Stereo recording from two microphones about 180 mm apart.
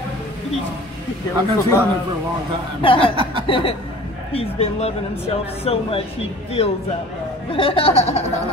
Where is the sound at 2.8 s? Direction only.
30° left (ahead or behind).